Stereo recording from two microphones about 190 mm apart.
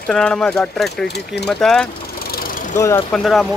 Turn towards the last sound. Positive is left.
turn(degrees=0)  # may be behind; listen again after turning